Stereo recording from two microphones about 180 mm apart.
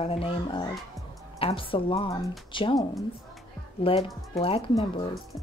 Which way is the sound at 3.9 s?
30° left (ahead or behind).